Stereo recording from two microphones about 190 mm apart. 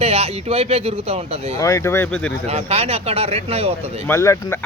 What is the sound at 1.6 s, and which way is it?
Speech, 15° left (ahead or behind).